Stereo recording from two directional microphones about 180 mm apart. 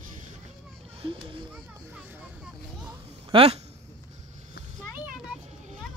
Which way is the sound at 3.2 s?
35° right (ahead or behind).